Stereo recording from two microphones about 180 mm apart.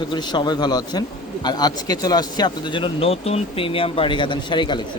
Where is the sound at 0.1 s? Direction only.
25° left (ahead or behind).